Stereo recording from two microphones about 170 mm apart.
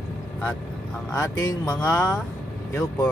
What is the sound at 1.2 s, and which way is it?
Speech, 20° left (ahead or behind).